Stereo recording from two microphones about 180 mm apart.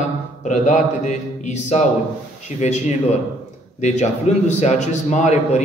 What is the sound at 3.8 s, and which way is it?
A man's voice, 40° left (ahead or behind).